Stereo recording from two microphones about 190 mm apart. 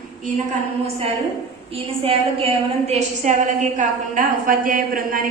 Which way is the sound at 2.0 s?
30° right (ahead or behind).